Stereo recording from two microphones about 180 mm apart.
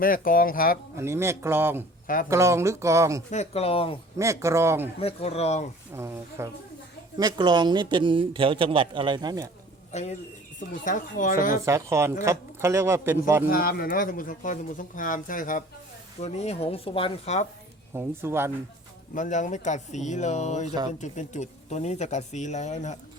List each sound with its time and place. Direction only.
0.0 s speech: 50° left (ahead or behind)
0.9 s speech: 15° right (ahead or behind)
3.3 s speech: 35° left (ahead or behind)
4.2 s speech: 15° right (ahead or behind)
4.9 s speech: 35° left (ahead or behind)
5.9 s speech: 15° right (ahead or behind)
9.9 s speech: 40° left (ahead or behind)
11.5 s speech: 15° right (ahead or behind)
13.5 s speech: 55° left (ahead or behind)
16.2 s speech: 35° left (ahead or behind)
17.9 s speech: 15° right (ahead or behind)
19.1 s speech: 45° left (ahead or behind)